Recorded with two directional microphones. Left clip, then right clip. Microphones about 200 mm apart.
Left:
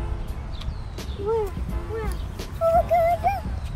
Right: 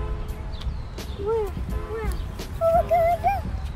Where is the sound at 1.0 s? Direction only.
Centre (ahead or behind).